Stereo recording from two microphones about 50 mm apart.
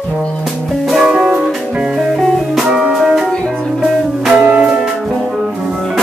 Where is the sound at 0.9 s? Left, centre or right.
Centre.